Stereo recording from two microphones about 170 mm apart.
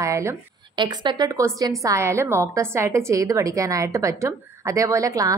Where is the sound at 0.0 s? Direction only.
15° right (ahead or behind).